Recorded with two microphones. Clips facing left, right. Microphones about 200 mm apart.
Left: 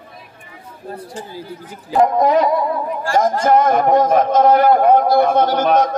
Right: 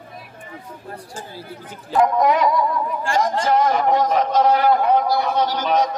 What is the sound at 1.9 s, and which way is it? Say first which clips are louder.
Speech: left 3 dB; 40° left (ahead or behind).